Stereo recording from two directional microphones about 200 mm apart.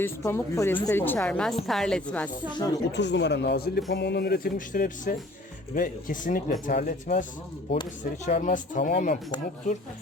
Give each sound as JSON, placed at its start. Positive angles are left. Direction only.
{"t": 0.0, "sound": "a woman's voice", "side_deg": 10}
{"t": 2.9, "sound": "speech", "side_deg": 60}